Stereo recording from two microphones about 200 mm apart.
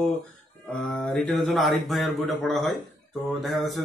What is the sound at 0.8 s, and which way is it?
Speech, 5° left (ahead or behind).